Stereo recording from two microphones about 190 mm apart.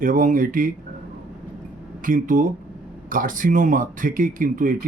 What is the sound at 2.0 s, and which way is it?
Speech, 45° right (ahead or behind).